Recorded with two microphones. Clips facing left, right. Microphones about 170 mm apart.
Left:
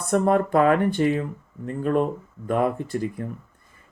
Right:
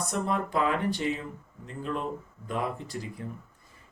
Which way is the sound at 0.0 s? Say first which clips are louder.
Left 9 dB; 55° left (ahead or behind).